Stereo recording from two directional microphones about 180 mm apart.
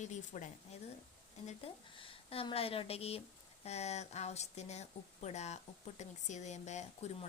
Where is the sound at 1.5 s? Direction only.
30° left (ahead or behind).